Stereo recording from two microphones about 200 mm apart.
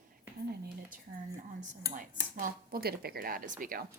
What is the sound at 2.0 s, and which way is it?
Speech, 40° right (ahead or behind).